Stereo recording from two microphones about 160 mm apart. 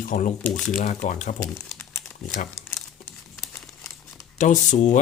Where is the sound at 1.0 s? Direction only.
50° left (ahead or behind).